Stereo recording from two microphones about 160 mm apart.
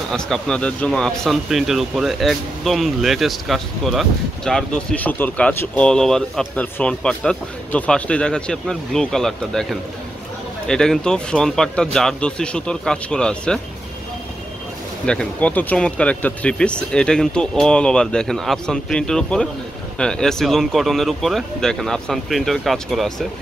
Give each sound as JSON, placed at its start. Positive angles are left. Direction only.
{"t": 0.1, "sound": "speech", "side_deg": 5}
{"t": 15.0, "sound": "speech", "side_deg": 5}